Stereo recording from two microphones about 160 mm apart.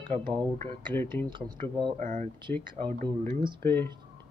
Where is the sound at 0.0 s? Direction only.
30° right (ahead or behind).